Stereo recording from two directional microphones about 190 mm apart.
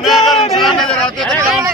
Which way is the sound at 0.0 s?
Centre (ahead or behind).